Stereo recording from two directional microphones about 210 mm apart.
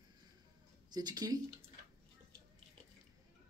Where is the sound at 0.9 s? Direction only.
20° right (ahead or behind).